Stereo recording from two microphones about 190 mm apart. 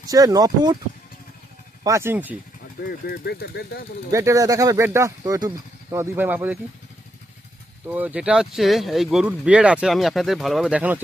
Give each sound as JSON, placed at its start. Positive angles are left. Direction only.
{"t": 0.0, "sound": "speech", "side_deg": -20}
{"t": 1.8, "sound": "speech", "side_deg": -15}
{"t": 2.8, "sound": "speech", "side_deg": 60}
{"t": 4.1, "sound": "speech", "side_deg": -15}
{"t": 7.9, "sound": "speech", "side_deg": -10}